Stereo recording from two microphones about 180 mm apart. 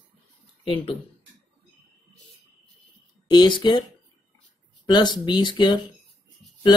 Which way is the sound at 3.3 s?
25° left (ahead or behind).